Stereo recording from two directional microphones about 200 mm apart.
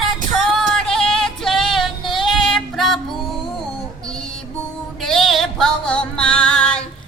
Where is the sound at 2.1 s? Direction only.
Centre (ahead or behind).